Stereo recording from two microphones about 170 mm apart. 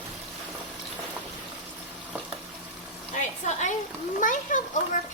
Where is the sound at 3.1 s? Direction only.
45° left (ahead or behind).